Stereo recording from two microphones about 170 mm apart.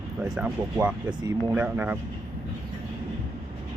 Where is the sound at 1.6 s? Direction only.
10° right (ahead or behind).